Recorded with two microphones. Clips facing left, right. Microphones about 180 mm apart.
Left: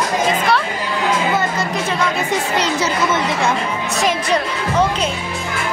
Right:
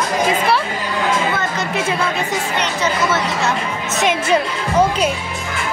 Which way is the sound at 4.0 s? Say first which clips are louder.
Right 2 dB; 5° right (ahead or behind).